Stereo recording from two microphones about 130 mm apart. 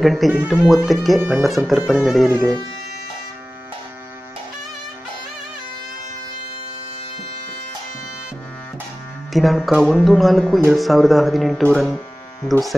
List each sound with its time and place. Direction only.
0.0 s speech: centre (ahead or behind)
9.3 s speech: centre (ahead or behind)